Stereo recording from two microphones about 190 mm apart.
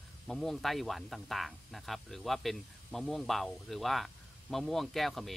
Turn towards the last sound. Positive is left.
turn(degrees=0)  # may be behind; listen again after turning